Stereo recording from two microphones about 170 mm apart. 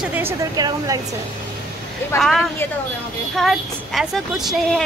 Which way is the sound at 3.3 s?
Centre (ahead or behind).